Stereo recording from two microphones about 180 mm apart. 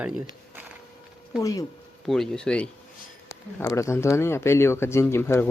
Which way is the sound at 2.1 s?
5° left (ahead or behind).